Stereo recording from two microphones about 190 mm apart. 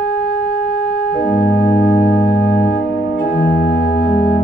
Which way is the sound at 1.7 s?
5° left (ahead or behind).